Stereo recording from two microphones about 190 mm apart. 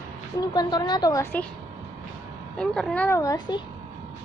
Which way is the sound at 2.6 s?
5° left (ahead or behind).